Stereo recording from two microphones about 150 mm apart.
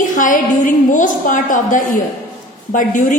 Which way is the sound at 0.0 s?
60° left (ahead or behind).